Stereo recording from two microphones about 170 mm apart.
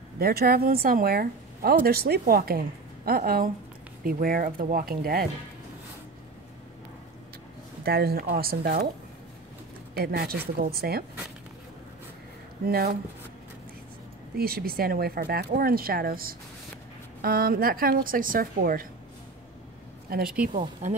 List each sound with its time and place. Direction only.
0.2 s a woman's voice: 65° right (ahead or behind)
7.8 s a woman's voice: 65° right (ahead or behind)
9.9 s a woman's voice: 70° right (ahead or behind)
12.6 s a woman's voice: 65° right (ahead or behind)
14.3 s a woman's voice: 65° right (ahead or behind)
20.1 s speech: 60° right (ahead or behind)